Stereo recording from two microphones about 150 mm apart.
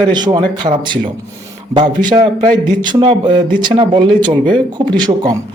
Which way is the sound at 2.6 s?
30° right (ahead or behind).